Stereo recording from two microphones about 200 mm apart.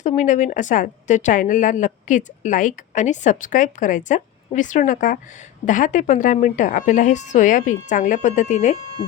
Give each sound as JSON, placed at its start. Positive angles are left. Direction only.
{"t": 0.0, "sound": "a woman's voice", "side_deg": 40}